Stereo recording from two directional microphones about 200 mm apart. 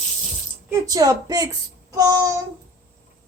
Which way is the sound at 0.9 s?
20° right (ahead or behind).